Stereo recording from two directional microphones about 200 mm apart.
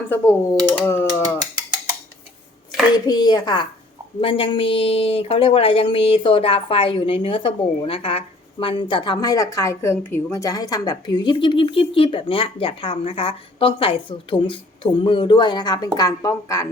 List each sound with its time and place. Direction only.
0.1 s speech: 10° left (ahead or behind)
2.9 s a woman's voice: 20° left (ahead or behind)